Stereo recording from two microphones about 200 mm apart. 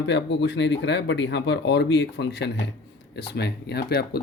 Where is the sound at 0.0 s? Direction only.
60° left (ahead or behind).